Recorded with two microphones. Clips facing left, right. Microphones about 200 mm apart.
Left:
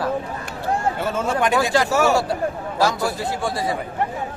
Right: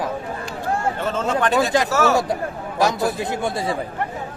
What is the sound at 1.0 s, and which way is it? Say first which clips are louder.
Speech: even; 10° left (ahead or behind).